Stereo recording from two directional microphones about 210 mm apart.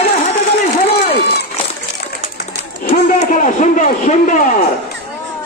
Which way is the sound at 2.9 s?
40° left (ahead or behind).